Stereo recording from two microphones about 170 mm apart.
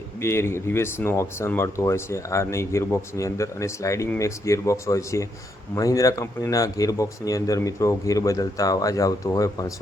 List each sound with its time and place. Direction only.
0.2 s speech: 15° left (ahead or behind)